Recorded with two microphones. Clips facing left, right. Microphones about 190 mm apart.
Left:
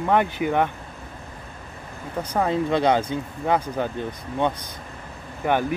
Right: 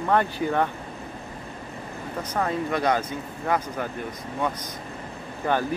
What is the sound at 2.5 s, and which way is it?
Speech, 25° left (ahead or behind).